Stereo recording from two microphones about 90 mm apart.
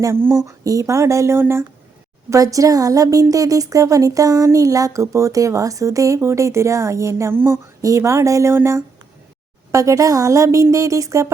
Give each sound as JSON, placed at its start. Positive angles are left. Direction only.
{"t": 0.0, "sound": "speech", "side_deg": -30}